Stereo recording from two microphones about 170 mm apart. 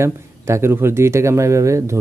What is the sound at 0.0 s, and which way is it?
Speech, 15° right (ahead or behind).